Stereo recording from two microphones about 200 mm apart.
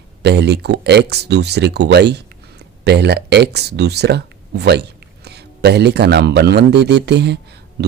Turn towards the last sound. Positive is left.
turn(degrees=-55)  # may be behind; listen again after turning